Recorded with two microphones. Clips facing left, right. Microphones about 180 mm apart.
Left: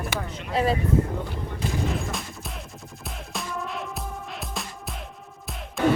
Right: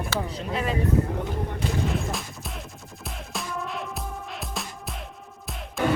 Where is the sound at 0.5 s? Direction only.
35° left (ahead or behind).